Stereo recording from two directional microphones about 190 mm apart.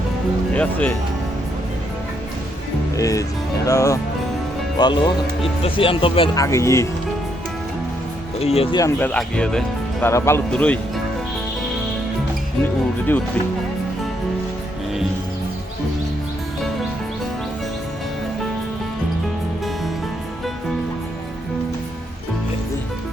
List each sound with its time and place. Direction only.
0.5 s speech: 10° left (ahead or behind)
2.9 s speech: 15° left (ahead or behind)
6.4 s speech: 15° left (ahead or behind)
8.4 s speech: 30° left (ahead or behind)
8.8 s speech: 10° left (ahead or behind)